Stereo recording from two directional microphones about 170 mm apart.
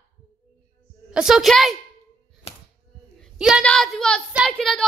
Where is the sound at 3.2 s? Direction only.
5° right (ahead or behind).